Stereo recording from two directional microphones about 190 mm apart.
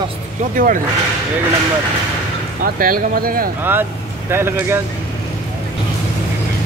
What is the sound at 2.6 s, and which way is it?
Speech, 50° right (ahead or behind).